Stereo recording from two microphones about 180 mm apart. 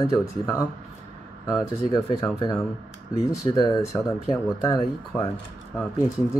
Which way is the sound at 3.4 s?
20° left (ahead or behind).